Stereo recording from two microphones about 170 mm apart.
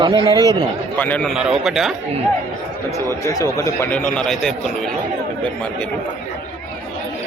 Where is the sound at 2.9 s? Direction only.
20° left (ahead or behind); by 4.6 s centre (ahead or behind).